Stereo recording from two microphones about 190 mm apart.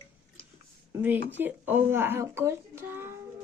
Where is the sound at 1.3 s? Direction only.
10° right (ahead or behind).